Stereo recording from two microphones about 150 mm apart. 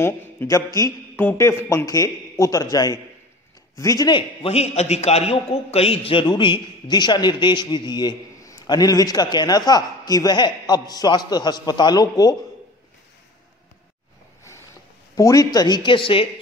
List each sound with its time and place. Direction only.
0.0 s a man's voice: 15° left (ahead or behind)
4.4 s a man's voice: 45° left (ahead or behind); by 12.4 s 25° left (ahead or behind)
15.1 s a man's voice: 25° left (ahead or behind)